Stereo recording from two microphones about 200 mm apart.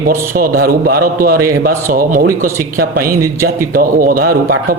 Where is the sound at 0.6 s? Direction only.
50° right (ahead or behind).